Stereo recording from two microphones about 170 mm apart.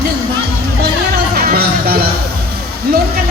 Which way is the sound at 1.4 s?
65° right (ahead or behind).